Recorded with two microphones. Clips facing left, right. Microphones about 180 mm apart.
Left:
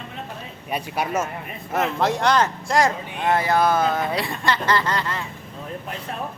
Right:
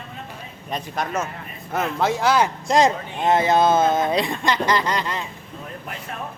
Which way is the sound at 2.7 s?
20° right (ahead or behind).